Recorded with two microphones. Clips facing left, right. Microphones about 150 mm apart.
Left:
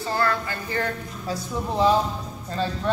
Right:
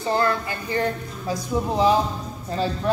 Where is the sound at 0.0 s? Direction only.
20° right (ahead or behind).